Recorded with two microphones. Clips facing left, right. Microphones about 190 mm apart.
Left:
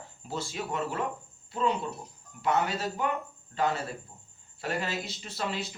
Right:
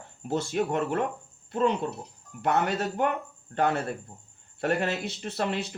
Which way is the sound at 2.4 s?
60° right (ahead or behind).